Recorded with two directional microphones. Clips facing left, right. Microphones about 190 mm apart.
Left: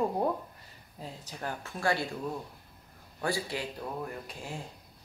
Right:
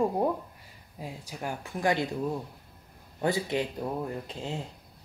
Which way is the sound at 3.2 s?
20° right (ahead or behind).